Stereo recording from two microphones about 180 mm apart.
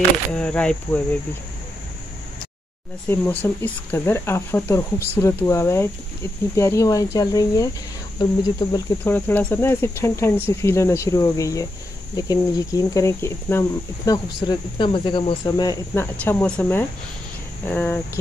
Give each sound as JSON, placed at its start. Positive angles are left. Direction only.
{"t": 0.3, "sound": "speech", "side_deg": 5}
{"t": 3.1, "sound": "speech", "side_deg": 10}